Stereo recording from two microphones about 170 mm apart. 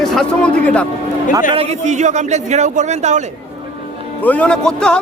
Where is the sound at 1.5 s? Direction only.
40° right (ahead or behind).